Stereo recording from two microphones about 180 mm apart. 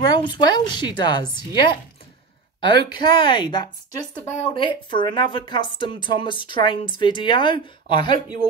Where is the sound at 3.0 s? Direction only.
25° left (ahead or behind).